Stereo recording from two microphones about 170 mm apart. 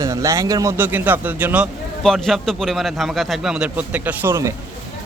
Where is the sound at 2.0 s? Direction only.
Centre (ahead or behind); by 4.5 s 15° right (ahead or behind).